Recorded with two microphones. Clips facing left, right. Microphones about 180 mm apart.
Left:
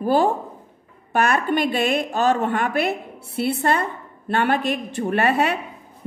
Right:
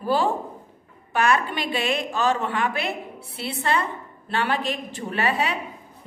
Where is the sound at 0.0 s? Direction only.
50° left (ahead or behind).